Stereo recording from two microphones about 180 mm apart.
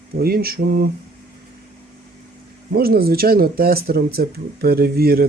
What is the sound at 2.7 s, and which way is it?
Speech, 55° right (ahead or behind).